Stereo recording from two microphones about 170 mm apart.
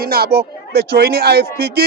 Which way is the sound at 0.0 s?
65° right (ahead or behind).